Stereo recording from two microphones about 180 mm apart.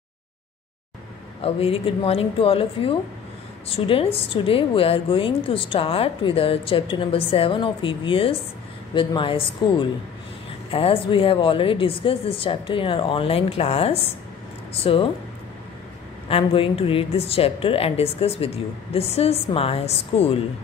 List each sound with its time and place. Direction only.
1.4 s a woman's voice: 35° left (ahead or behind)
16.3 s a woman's voice: 30° left (ahead or behind)